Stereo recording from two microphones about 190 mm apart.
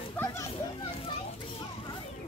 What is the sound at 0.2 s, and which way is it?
Children playing, 15° left (ahead or behind).